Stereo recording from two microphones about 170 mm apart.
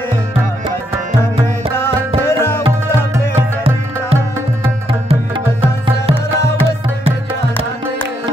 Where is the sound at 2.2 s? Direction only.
15° left (ahead or behind).